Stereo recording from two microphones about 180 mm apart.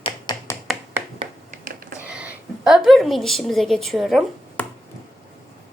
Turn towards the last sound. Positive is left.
turn(degrees=0)  # may be behind; listen again after turning